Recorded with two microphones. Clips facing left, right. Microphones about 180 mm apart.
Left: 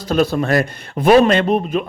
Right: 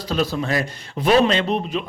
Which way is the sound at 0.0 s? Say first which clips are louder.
Left 6 dB; 50° left (ahead or behind).